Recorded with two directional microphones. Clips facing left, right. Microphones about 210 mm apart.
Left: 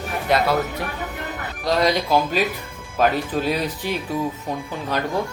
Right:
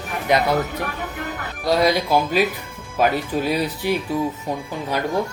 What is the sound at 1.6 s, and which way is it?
Speech, 10° right (ahead or behind).